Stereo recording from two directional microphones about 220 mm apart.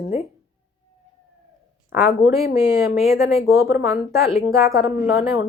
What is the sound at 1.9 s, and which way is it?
A woman's voice, 10° right (ahead or behind).